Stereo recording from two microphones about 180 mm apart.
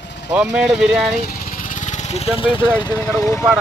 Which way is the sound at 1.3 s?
50° left (ahead or behind).